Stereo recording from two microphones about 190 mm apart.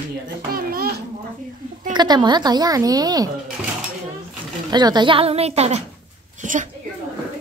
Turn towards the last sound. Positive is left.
turn(degrees=-40)  # may be behind; listen again after turning